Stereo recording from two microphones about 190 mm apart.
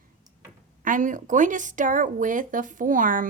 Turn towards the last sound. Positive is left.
turn(degrees=-45)  # may be behind; listen again after turning